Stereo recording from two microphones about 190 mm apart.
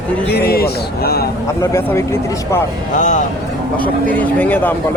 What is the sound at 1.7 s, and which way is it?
Speech, 15° left (ahead or behind).